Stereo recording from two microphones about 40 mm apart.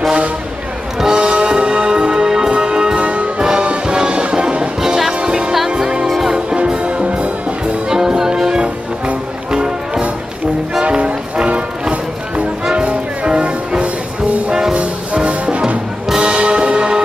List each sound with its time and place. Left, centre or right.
1.0 s music: right
3.1 s music: right
3.4 s music: right
6.0 s music: centre
6.3 s music: right
7.9 s music: centre
14.8 s music: right